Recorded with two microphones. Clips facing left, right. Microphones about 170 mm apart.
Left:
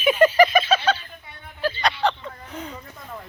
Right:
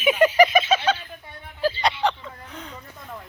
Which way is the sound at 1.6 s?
35° right (ahead or behind).